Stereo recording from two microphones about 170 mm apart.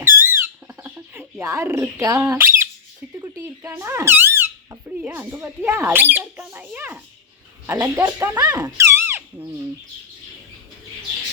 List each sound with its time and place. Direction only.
0.0 s a sound: 15° right (ahead or behind)
2.3 s squawk: 15° right (ahead or behind)
3.2 s squeak: 10° right (ahead or behind)
7.7 s speech: 15° right (ahead or behind)